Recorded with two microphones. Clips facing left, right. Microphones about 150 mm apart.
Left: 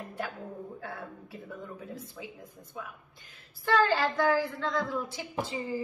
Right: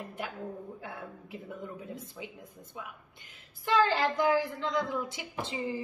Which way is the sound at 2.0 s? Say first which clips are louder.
Even; 20° right (ahead or behind).